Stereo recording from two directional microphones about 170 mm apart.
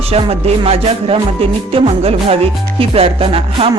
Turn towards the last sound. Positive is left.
turn(degrees=-35)  # may be behind; listen again after turning